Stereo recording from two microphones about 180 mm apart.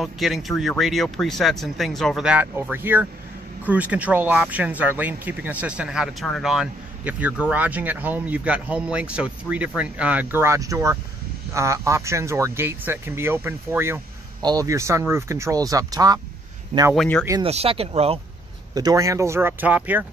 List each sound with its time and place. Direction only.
0.0 s speech: centre (ahead or behind); by 16.2 s 20° right (ahead or behind)
16.9 s speech: centre (ahead or behind)
17.4 s speech: 35° right (ahead or behind)
18.8 s speech: 20° right (ahead or behind)